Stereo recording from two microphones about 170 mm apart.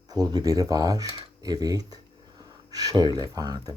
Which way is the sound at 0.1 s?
25° right (ahead or behind).